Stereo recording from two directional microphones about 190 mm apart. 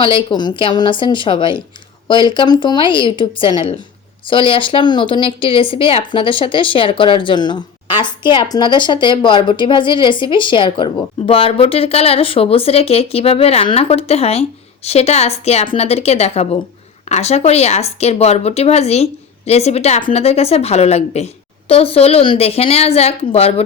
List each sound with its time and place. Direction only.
0.0 s speech: 25° left (ahead or behind)